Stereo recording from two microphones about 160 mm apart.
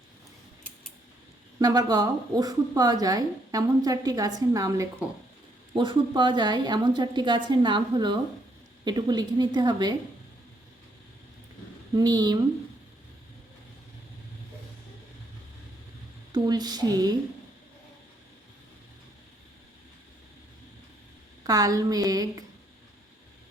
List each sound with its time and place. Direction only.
1.5 s a woman's voice: 25° right (ahead or behind)
11.9 s a woman's voice: 25° right (ahead or behind)
16.3 s a woman's voice: 25° right (ahead or behind)
21.4 s a woman's voice: 20° right (ahead or behind)